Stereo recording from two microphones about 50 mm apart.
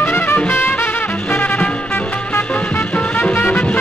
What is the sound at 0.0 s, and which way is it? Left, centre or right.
Music, left.